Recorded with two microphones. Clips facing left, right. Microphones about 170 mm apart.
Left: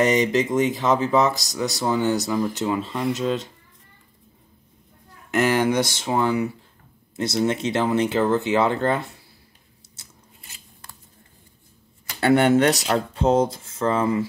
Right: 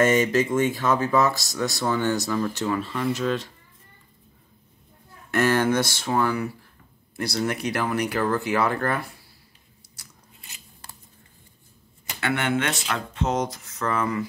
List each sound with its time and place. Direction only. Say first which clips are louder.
0.0 s speech: left 1 dB; 20° left (ahead or behind)
5.3 s speech: left 1 dB; 15° left (ahead or behind)
10.0 s biting: even; 25° left (ahead or behind)
12.2 s speech: left 8 dB; 35° left (ahead or behind)